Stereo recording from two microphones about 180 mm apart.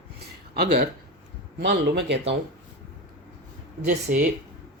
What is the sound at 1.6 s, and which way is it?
Speech, 75° right (ahead or behind).